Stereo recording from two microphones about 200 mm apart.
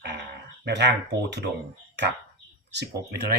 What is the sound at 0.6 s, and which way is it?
Speech, 60° right (ahead or behind).